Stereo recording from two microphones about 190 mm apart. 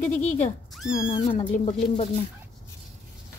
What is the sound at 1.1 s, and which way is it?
Speech, 25° left (ahead or behind).